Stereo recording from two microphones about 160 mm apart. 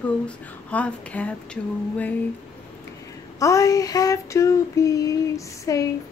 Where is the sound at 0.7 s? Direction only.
10° left (ahead or behind).